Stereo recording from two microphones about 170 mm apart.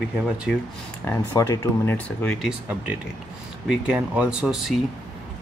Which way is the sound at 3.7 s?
5° right (ahead or behind).